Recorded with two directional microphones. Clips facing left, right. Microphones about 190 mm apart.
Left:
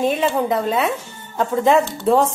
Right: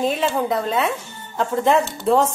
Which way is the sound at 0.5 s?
5° left (ahead or behind).